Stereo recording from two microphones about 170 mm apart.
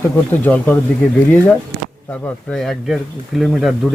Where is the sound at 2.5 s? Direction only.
Centre (ahead or behind).